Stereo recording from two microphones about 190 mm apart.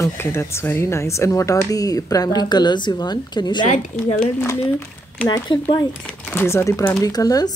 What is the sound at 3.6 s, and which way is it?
Speech, 40° left (ahead or behind).